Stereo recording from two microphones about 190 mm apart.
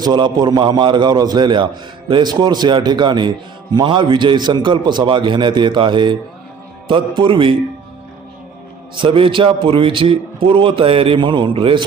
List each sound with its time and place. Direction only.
0.0 s a man's voice: 20° right (ahead or behind)
7.2 s a man's voice: 25° right (ahead or behind)
9.0 s a man's voice: 30° right (ahead or behind)